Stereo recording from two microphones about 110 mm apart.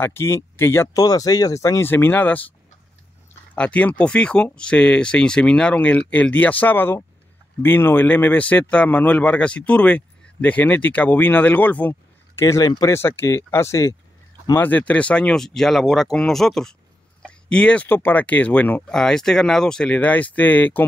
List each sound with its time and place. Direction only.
0.0 s speech: 20° left (ahead or behind)
3.5 s speech: 10° left (ahead or behind)
14.6 s speech: 15° left (ahead or behind)